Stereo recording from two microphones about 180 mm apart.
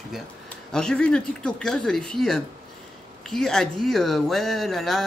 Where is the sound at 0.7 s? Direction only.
5° left (ahead or behind).